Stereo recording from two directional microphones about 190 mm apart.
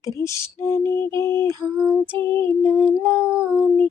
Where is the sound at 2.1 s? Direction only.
25° right (ahead or behind).